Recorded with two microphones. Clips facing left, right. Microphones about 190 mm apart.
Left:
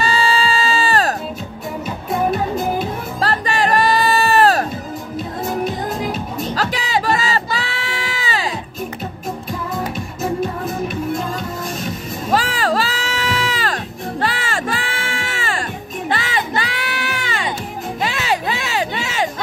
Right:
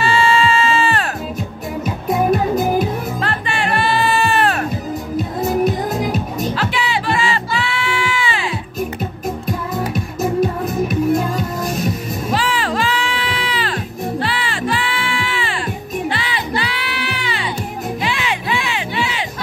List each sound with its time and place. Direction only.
0.0 s music: 35° left (ahead or behind)
3.2 s music: 40° left (ahead or behind)
6.5 s music: 40° left (ahead or behind)
12.3 s music: 40° left (ahead or behind)
14.2 s crowd: 45° left (ahead or behind)
16.1 s music: 45° left (ahead or behind)